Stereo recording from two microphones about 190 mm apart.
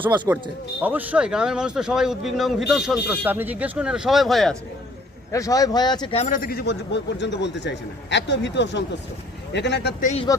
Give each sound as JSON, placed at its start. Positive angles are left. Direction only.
{"t": 0.3, "sound": "speech", "side_deg": -10}
{"t": 5.3, "sound": "speech", "side_deg": 15}
{"t": 10.0, "sound": "speech", "side_deg": 40}